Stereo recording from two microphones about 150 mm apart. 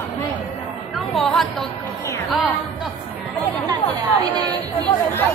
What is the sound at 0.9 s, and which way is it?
Speech, centre (ahead or behind).